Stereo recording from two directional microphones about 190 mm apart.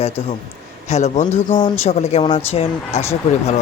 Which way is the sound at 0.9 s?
35° left (ahead or behind).